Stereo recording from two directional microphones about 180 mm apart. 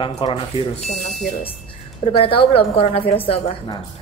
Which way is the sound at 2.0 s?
30° left (ahead or behind).